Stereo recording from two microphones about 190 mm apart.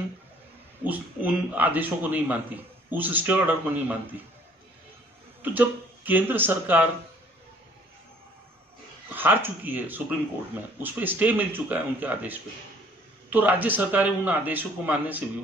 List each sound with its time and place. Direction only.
0.8 s a man's voice: 10° right (ahead or behind)
5.4 s a man's voice: 10° right (ahead or behind)
9.1 s a man's voice: 10° right (ahead or behind)